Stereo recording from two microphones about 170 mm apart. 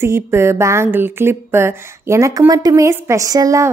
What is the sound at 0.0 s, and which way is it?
Speech, 15° right (ahead or behind).